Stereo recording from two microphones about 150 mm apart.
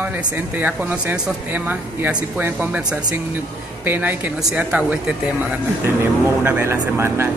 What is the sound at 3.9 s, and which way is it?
Speech, 10° right (ahead or behind).